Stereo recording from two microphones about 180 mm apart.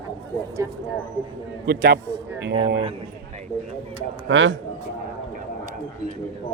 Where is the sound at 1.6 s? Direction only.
60° right (ahead or behind).